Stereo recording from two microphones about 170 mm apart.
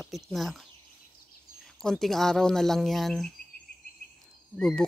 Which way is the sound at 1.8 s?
5° left (ahead or behind).